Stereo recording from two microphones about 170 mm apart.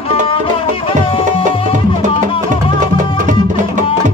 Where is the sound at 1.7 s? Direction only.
45° right (ahead or behind).